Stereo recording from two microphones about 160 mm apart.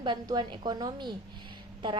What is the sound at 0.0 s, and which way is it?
A woman's voice, 25° right (ahead or behind).